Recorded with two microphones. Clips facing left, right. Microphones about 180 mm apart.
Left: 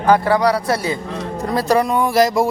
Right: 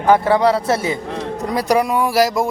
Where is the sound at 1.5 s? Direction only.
15° right (ahead or behind).